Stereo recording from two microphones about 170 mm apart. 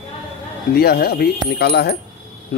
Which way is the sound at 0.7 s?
65° left (ahead or behind).